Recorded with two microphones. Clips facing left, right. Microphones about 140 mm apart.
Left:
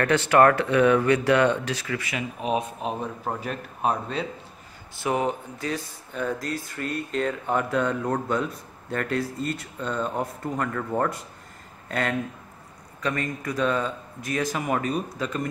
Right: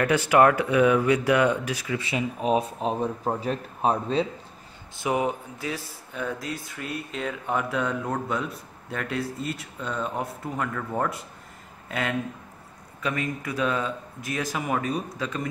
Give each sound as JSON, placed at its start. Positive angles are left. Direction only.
{"t": 0.0, "sound": "speech", "side_deg": -10}
{"t": 2.0, "sound": "speech", "side_deg": -30}
{"t": 4.9, "sound": "speech", "side_deg": -15}